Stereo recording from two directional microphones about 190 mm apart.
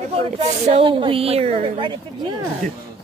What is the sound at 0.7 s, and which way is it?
A woman's voice, 30° right (ahead or behind).